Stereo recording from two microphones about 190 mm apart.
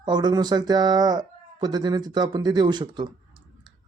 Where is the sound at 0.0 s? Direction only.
20° right (ahead or behind).